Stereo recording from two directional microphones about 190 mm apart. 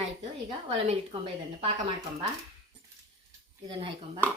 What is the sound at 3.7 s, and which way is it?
Speech, 25° right (ahead or behind).